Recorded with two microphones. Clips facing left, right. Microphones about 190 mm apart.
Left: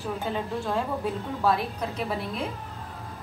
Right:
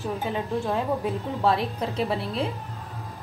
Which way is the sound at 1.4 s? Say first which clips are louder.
Right 2 dB; 30° right (ahead or behind).